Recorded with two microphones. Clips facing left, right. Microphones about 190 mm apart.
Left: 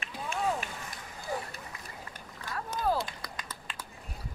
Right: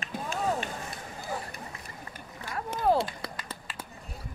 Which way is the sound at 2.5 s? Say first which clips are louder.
Right 4 dB; 25° right (ahead or behind).